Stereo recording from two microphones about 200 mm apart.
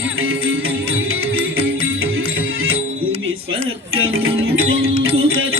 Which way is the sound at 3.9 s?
90° right.